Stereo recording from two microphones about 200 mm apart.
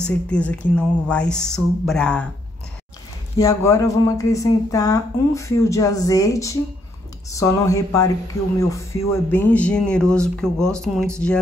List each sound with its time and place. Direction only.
0.0 s speech: 5° left (ahead or behind)
3.3 s speech: 15° left (ahead or behind)